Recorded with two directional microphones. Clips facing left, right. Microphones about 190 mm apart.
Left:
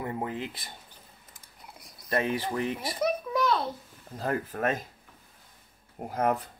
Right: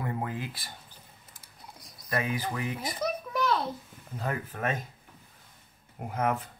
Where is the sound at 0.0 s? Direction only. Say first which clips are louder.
Left 1 dB; 20° left (ahead or behind).